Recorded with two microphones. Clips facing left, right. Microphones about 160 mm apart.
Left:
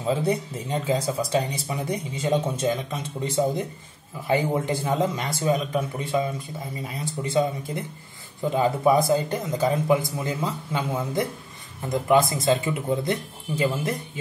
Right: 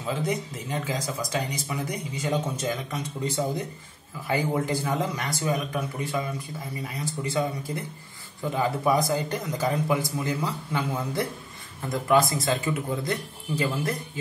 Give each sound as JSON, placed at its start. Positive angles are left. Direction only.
{"t": 0.0, "sound": "speech", "side_deg": 30}